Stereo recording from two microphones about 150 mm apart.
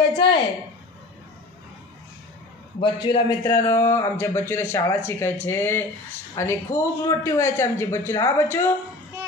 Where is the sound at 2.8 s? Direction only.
30° left (ahead or behind).